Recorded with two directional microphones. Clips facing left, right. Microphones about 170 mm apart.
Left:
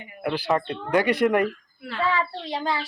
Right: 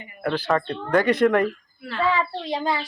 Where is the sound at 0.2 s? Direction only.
10° left (ahead or behind).